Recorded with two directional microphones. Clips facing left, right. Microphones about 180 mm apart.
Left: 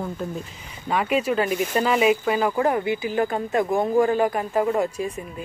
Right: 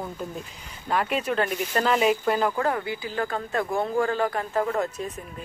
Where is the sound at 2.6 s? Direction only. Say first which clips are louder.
Left 5 dB; 20° left (ahead or behind).